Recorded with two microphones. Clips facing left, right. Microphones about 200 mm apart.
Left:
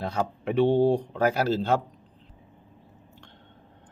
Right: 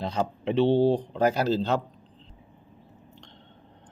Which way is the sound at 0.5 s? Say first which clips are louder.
Even; 50° left (ahead or behind).